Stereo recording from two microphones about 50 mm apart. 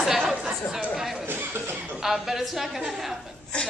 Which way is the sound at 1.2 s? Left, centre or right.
Right.